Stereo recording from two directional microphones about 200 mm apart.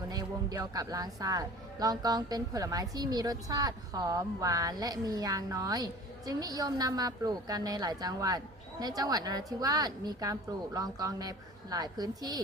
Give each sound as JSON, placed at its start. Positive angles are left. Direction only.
{"t": 0.1, "sound": "speech", "side_deg": -20}